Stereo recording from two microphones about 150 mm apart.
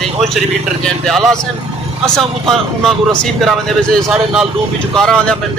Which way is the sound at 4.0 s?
5° right (ahead or behind).